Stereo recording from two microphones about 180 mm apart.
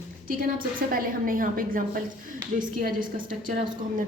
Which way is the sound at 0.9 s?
50° right (ahead or behind).